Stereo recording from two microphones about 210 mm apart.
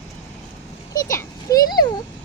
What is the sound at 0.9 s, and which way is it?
Children playing, 15° left (ahead or behind).